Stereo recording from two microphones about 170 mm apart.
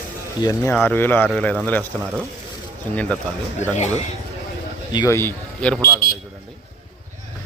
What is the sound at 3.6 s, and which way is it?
Speech, 40° left (ahead or behind).